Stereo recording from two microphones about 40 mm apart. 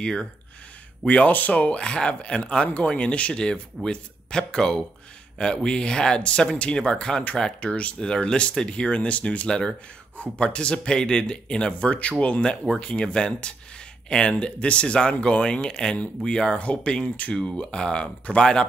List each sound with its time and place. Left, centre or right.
0.0 s speech: centre
1.0 s speech: left
3.8 s speech: centre
7.6 s speech: left
8.3 s speech: left
9.5 s speech: centre
10.1 s speech: left